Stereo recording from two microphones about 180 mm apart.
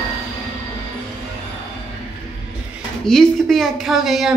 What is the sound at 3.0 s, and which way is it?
A woman's voice, centre (ahead or behind).